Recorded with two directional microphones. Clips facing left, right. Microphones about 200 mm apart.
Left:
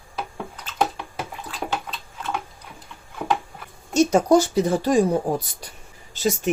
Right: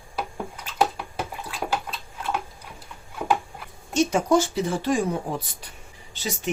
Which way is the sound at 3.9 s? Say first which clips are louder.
Left 4 dB; 40° left (ahead or behind).